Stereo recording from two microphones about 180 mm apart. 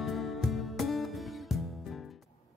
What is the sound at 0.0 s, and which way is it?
Music, centre (ahead or behind).